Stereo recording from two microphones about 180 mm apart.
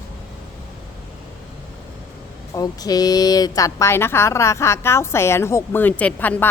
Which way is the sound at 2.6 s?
20° left (ahead or behind).